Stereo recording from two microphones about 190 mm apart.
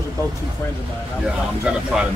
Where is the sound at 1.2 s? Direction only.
5° right (ahead or behind).